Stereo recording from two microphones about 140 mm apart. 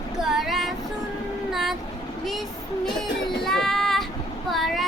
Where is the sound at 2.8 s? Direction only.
Centre (ahead or behind).